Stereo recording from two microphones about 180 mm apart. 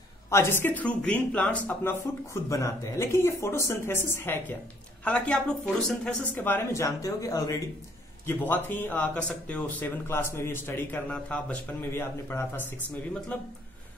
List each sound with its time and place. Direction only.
0.3 s a man's voice: 15° left (ahead or behind)